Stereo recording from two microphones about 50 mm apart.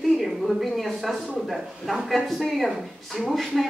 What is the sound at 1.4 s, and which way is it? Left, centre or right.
A woman's voice, centre.